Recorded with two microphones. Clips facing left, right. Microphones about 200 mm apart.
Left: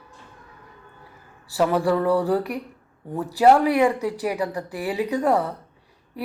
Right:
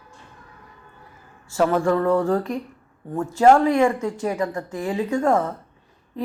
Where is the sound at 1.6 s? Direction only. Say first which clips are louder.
Right 1 dB; 10° left (ahead or behind).